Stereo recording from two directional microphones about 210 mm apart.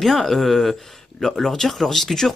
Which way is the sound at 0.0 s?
Centre (ahead or behind).